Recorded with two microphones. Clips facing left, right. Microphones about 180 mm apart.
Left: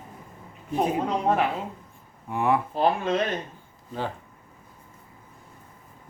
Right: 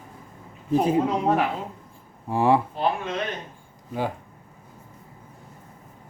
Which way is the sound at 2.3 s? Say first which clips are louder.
Right 4 dB; 30° right (ahead or behind).